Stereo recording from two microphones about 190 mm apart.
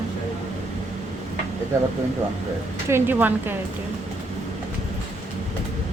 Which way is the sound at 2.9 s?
10° right (ahead or behind).